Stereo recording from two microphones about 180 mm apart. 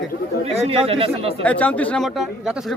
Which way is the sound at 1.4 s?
10° left (ahead or behind).